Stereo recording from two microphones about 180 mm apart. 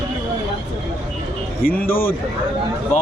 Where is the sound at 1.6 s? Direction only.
55° left (ahead or behind).